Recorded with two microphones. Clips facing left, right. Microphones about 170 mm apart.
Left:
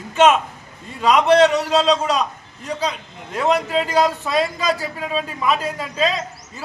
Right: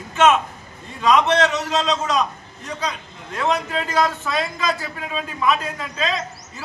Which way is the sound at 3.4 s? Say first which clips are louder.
Left 4 dB; 35° left (ahead or behind).